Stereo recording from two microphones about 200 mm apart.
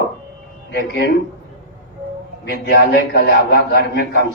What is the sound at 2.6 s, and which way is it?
A man's voice, 55° left (ahead or behind).